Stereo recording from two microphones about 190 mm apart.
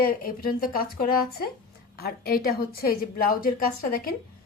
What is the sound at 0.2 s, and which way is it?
Speech, 50° left (ahead or behind).